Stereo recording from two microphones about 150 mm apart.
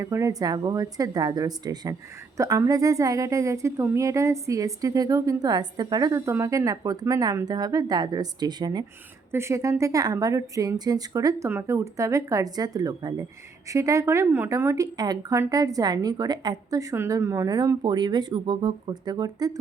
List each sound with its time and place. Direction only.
0.0 s a woman's voice: 20° right (ahead or behind)